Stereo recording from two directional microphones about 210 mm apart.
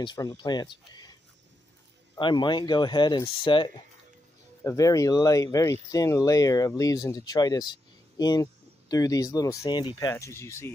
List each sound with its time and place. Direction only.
0.0 s speech: 20° left (ahead or behind)
2.1 s speech: 20° left (ahead or behind)